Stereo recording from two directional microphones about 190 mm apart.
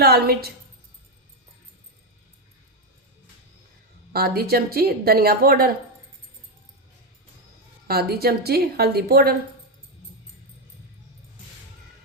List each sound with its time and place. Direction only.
0.0 s a woman's voice: 55° right (ahead or behind)
4.1 s a woman's voice: 55° right (ahead or behind)
7.9 s a woman's voice: 55° right (ahead or behind)